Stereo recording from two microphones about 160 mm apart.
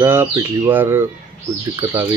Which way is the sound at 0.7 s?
15° right (ahead or behind).